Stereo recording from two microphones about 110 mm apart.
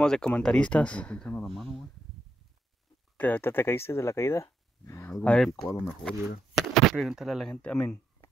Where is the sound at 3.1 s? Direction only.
15° left (ahead or behind).